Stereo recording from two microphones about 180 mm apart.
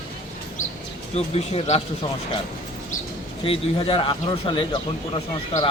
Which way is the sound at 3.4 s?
30° left (ahead or behind).